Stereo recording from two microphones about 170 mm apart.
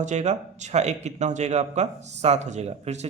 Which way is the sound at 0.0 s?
40° right (ahead or behind).